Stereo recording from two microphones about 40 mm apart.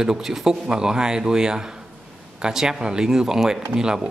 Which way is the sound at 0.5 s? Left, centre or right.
Centre.